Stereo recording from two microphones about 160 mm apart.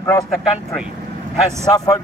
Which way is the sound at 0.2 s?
5° right (ahead or behind).